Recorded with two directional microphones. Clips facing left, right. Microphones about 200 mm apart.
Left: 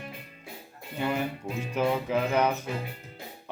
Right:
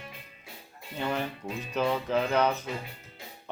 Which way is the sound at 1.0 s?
10° left (ahead or behind).